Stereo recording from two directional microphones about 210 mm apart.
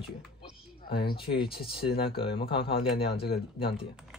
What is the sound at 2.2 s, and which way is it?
Speech, 25° left (ahead or behind).